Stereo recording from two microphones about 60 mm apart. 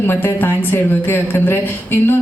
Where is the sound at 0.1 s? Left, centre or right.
Left.